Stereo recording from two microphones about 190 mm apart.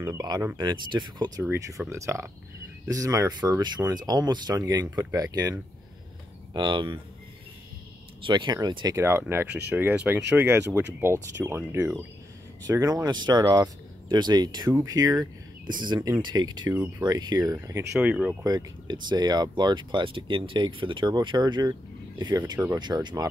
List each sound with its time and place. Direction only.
0.0 s speech: 20° right (ahead or behind)
8.2 s speech: 25° right (ahead or behind)
17.9 s speech: 5° right (ahead or behind)
18.4 s speech: 20° right (ahead or behind)